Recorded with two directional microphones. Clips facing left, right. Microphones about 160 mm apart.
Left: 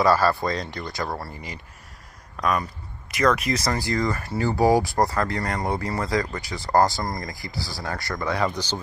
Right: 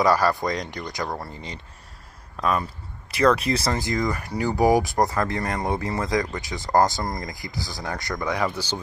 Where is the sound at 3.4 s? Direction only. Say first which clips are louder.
Right 1 dB; 30° right (ahead or behind); by 8.8 s 10° right (ahead or behind).